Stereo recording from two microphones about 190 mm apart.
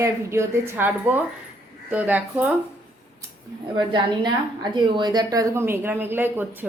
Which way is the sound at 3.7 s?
25° right (ahead or behind).